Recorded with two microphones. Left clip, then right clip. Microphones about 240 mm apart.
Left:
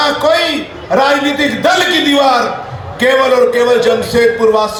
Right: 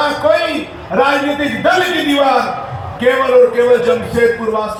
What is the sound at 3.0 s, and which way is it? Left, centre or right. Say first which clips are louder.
Speech: left 1 dB; left.